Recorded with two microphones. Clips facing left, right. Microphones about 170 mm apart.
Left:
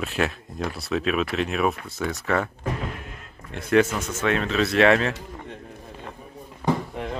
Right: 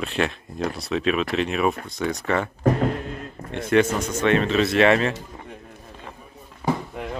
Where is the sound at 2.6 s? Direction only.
40° right (ahead or behind).